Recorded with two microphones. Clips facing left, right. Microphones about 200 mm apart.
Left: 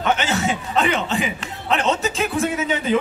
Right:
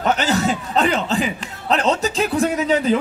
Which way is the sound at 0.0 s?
40° right (ahead or behind).